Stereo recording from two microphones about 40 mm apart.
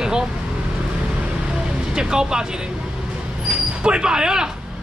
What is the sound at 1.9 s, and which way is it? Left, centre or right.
Speech, centre.